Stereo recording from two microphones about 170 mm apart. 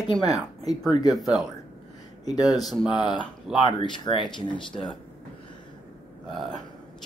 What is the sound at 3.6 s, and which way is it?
Speech, 25° left (ahead or behind).